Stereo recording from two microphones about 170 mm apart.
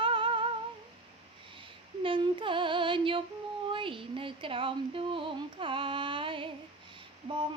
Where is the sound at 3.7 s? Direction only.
30° right (ahead or behind).